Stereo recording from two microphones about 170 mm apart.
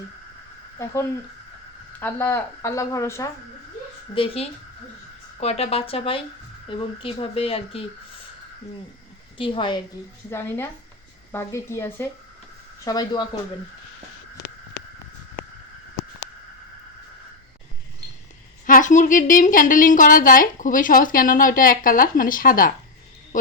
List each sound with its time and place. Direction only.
2.0 s a woman's voice: 10° left (ahead or behind)
4.1 s speech: 35° left (ahead or behind)
9.4 s speech: 30° left (ahead or behind)
10.2 s a woman's voice: 15° left (ahead or behind)
18.6 s a woman's voice: 50° left (ahead or behind)
23.3 s owl: 50° left (ahead or behind)